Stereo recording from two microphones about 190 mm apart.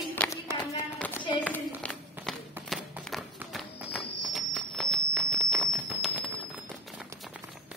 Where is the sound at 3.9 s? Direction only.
Centre (ahead or behind).